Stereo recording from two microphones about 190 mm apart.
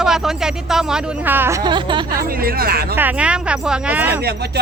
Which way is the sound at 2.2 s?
50° right (ahead or behind).